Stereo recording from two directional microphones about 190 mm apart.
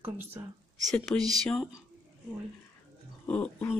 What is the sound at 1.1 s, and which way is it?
Speech, 5° left (ahead or behind).